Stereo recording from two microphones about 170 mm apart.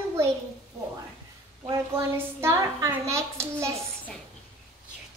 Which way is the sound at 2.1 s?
15° right (ahead or behind).